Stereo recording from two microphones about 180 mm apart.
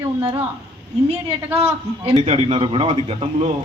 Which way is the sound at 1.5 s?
35° right (ahead or behind).